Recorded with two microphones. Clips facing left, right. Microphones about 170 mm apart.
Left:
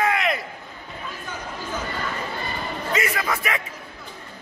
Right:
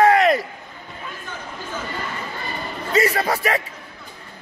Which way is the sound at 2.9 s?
35° right (ahead or behind).